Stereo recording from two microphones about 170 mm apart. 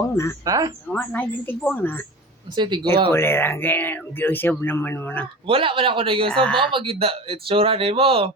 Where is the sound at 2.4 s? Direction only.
25° right (ahead or behind).